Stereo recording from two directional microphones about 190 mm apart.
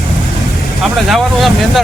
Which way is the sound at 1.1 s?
Centre (ahead or behind).